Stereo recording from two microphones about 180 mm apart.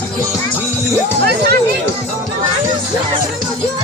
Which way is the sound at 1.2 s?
65° right (ahead or behind).